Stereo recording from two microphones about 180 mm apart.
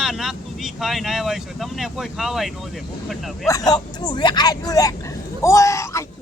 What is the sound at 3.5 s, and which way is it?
A woman's voice, 20° left (ahead or behind).